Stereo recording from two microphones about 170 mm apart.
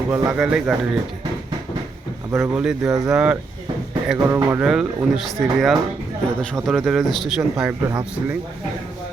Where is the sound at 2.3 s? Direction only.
15° right (ahead or behind).